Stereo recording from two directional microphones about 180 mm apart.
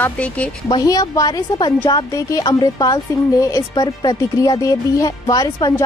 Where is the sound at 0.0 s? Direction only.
5° left (ahead or behind).